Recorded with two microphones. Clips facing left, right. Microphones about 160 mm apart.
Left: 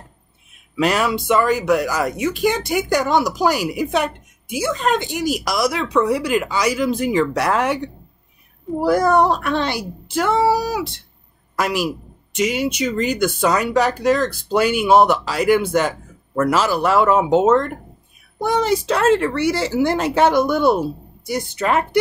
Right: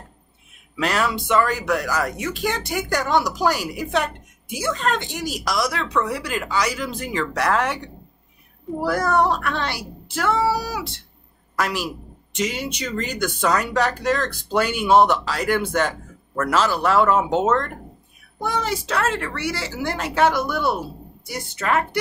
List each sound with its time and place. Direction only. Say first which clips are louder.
0.7 s speech: left 4 dB; 15° left (ahead or behind)
8.8 s a woman's voice: left 5 dB; 15° left (ahead or behind)